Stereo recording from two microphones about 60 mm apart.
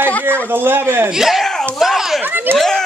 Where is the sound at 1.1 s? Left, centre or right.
Centre.